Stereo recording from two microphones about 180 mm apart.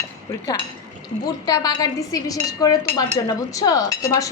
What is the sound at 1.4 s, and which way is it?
Speech, 20° left (ahead or behind).